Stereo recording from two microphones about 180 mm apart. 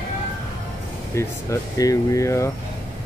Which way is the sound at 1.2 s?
15° left (ahead or behind).